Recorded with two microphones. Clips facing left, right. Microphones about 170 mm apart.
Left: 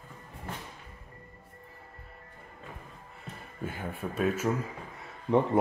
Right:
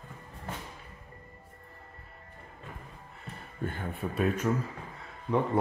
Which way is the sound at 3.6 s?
5° left (ahead or behind).